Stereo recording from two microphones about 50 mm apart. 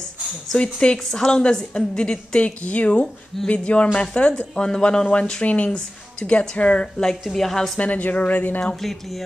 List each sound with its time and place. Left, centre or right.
0.5 s a woman's voice: centre
7.8 s a woman's voice: left
8.7 s speech: centre